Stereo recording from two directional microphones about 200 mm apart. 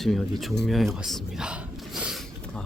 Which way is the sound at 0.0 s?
Centre (ahead or behind).